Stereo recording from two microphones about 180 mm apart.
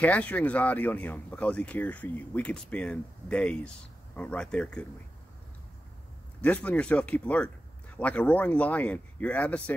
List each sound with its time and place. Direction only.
0.0 s speech: 10° left (ahead or behind)
6.4 s speech: 10° left (ahead or behind)